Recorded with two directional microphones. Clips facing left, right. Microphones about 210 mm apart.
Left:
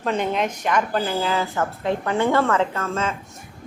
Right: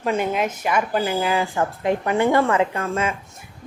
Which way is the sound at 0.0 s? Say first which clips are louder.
Right 1 dB; 5° right (ahead or behind).